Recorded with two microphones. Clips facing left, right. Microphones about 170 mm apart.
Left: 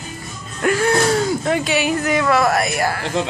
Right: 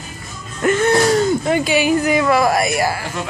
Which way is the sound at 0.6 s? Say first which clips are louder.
Right 2 dB; centre (ahead or behind).